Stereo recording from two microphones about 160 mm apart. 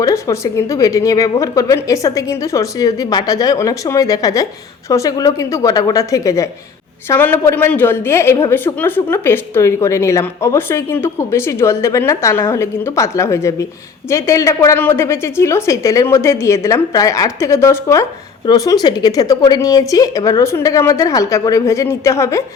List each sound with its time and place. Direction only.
0.0 s a woman's voice: 20° left (ahead or behind)